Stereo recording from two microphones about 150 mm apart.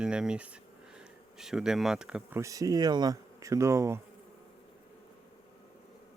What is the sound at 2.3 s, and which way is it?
Speech, 20° right (ahead or behind).